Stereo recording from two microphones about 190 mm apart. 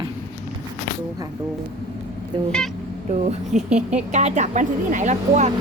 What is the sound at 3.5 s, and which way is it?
A woman's voice, 40° right (ahead or behind).